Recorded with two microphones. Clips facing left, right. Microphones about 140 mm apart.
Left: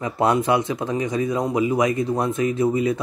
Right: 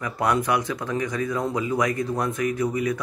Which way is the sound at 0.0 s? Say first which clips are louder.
Left 4 dB; 25° left (ahead or behind).